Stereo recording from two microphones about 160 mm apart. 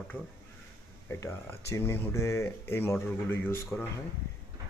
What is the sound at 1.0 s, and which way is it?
Speech, 15° left (ahead or behind).